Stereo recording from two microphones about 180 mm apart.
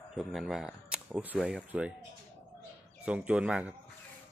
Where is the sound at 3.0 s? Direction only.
5° right (ahead or behind).